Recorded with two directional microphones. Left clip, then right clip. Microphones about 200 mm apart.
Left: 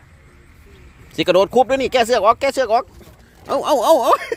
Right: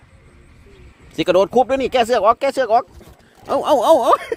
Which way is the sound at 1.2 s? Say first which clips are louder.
Left 1 dB; centre (ahead or behind).